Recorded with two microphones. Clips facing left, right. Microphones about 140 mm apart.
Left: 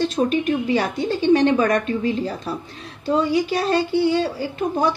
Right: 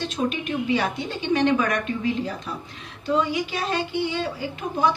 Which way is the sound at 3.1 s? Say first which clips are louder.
Left 4 dB; 35° left (ahead or behind).